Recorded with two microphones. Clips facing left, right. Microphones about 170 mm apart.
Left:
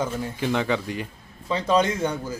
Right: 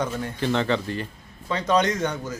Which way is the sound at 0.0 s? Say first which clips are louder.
Even; 10° left (ahead or behind).